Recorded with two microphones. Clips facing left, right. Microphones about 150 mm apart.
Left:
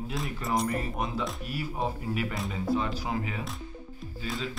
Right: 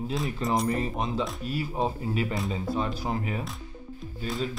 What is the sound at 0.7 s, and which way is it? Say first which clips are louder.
Speech: right 3 dB; 25° right (ahead or behind).